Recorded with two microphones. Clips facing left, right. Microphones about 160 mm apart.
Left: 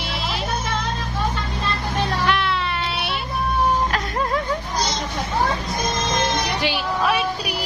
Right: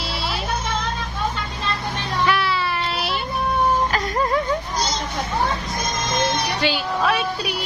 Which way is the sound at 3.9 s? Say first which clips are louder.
Right 2 dB; centre (ahead or behind).